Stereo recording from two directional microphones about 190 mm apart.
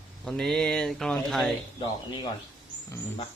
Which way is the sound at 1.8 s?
25° left (ahead or behind).